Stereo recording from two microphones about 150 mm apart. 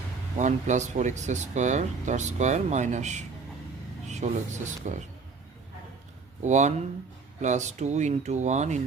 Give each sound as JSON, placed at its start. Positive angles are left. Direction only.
{"t": 0.3, "sound": "speech", "side_deg": -55}
{"t": 6.4, "sound": "speech", "side_deg": -50}